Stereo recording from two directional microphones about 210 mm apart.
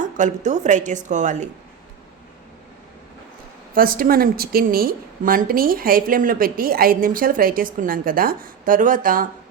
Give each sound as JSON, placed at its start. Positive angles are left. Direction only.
{"t": 0.0, "sound": "a woman's voice", "side_deg": -35}
{"t": 3.8, "sound": "a woman's voice", "side_deg": -45}